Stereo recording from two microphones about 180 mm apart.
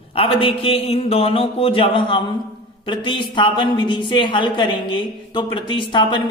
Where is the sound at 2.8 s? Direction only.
25° left (ahead or behind).